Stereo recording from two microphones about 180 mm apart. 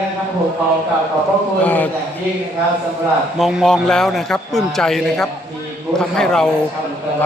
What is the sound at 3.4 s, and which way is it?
A man's voice, centre (ahead or behind).